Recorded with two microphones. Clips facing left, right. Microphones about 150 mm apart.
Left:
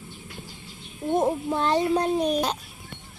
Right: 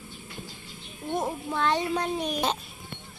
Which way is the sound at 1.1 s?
25° left (ahead or behind).